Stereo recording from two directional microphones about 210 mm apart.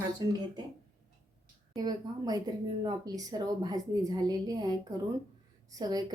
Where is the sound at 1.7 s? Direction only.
20° right (ahead or behind).